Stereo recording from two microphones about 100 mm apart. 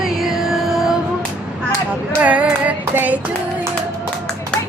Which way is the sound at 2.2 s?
15° right (ahead or behind).